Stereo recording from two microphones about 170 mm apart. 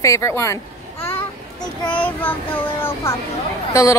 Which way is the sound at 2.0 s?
10° left (ahead or behind).